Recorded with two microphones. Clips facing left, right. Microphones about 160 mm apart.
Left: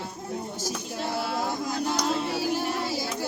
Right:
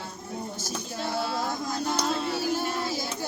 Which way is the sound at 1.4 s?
10° left (ahead or behind).